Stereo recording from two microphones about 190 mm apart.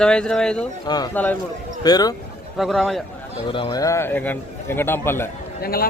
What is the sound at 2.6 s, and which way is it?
Speech, centre (ahead or behind).